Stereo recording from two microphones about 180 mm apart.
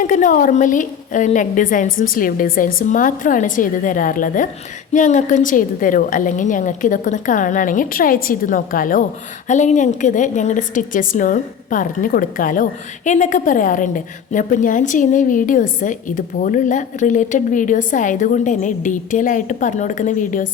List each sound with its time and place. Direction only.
0.0 s a woman's voice: 45° left (ahead or behind)